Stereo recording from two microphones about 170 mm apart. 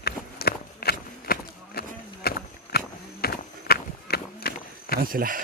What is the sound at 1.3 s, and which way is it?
Run, 65° left (ahead or behind).